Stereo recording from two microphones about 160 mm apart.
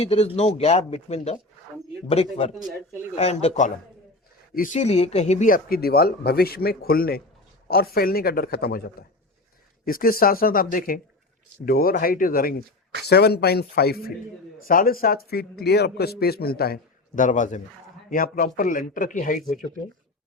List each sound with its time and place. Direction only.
0.0 s a man's voice: 40° left (ahead or behind); by 12.6 s 65° left (ahead or behind)
13.1 s speech: 90° left
14.7 s speech: 60° left (ahead or behind)
17.2 s a man's voice: 50° left (ahead or behind)